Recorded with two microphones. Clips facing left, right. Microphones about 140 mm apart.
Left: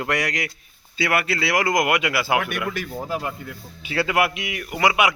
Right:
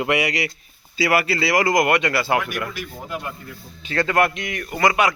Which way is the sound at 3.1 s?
30° left (ahead or behind).